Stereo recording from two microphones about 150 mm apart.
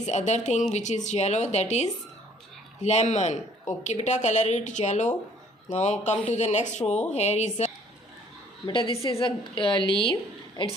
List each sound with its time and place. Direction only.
0.0 s speech: 50° left (ahead or behind)
8.6 s a woman's voice: 30° left (ahead or behind)
9.2 s a woman's voice: 35° left (ahead or behind)